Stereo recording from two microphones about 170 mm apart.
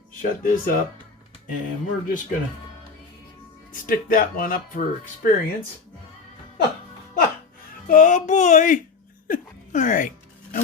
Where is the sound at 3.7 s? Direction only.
55° left (ahead or behind).